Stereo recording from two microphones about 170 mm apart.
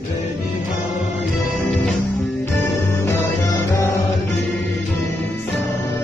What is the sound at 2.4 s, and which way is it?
Music, 15° left (ahead or behind).